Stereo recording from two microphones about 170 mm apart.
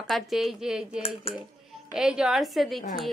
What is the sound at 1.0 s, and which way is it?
Speech, 35° left (ahead or behind).